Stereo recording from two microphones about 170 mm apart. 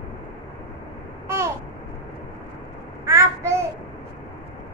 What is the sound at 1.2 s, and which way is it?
Babbling, 15° right (ahead or behind).